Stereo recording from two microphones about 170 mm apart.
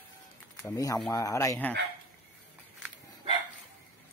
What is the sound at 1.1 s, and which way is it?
Speech, 20° left (ahead or behind).